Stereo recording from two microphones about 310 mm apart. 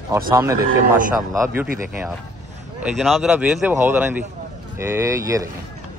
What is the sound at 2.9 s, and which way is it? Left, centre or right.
Speech, centre.